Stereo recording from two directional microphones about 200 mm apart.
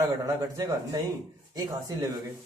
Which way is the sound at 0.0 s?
15° right (ahead or behind).